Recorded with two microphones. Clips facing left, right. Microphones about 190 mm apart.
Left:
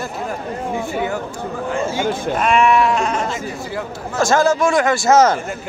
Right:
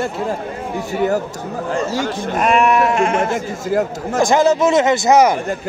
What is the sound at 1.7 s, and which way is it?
Speech, 40° right (ahead or behind).